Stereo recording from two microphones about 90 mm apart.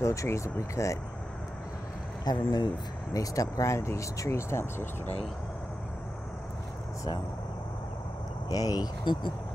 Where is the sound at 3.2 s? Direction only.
40° left (ahead or behind).